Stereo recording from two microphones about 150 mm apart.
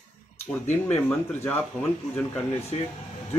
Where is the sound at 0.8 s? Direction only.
10° left (ahead or behind).